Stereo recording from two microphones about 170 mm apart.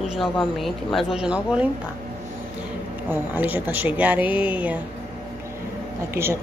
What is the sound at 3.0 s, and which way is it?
Speech, 10° right (ahead or behind).